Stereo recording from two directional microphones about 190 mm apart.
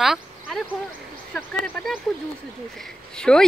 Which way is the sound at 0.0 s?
Centre (ahead or behind).